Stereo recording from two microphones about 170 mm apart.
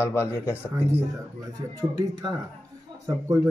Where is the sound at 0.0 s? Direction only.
15° left (ahead or behind).